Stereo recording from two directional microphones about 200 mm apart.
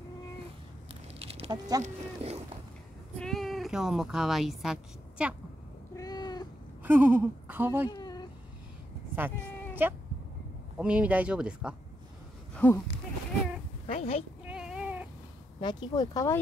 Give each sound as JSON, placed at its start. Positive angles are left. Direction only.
{"t": 1.2, "sound": "a sound", "side_deg": -30}
{"t": 1.8, "sound": "speech", "side_deg": -30}
{"t": 3.2, "sound": "speech", "side_deg": 0}
{"t": 5.9, "sound": "cat", "side_deg": 20}
{"t": 6.8, "sound": "speech", "side_deg": -10}
{"t": 7.9, "sound": "a sound", "side_deg": 20}
{"t": 9.8, "sound": "speech", "side_deg": -10}
{"t": 12.5, "sound": "speech", "side_deg": 10}
{"t": 13.8, "sound": "speech", "side_deg": 30}
{"t": 14.4, "sound": "a sound", "side_deg": -5}
{"t": 15.6, "sound": "speech", "side_deg": 20}